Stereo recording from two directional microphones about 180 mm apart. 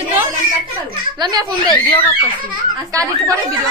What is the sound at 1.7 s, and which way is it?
Speech, 25° left (ahead or behind).